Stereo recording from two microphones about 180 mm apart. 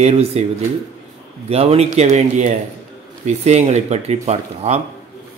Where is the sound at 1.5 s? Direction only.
35° right (ahead or behind).